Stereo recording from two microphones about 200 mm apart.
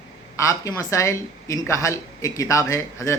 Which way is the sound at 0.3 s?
15° left (ahead or behind).